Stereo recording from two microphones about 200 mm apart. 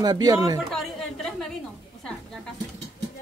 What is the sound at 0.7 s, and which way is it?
Chatter, centre (ahead or behind).